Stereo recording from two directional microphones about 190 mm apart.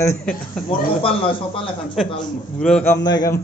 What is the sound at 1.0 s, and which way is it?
Speech, 30° left (ahead or behind).